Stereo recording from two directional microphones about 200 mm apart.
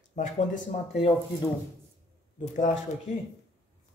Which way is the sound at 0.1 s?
35° left (ahead or behind).